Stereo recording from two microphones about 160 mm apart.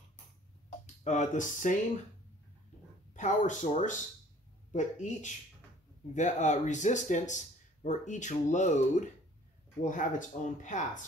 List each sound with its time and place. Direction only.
1.0 s speech: 45° left (ahead or behind)
3.2 s speech: 50° left (ahead or behind)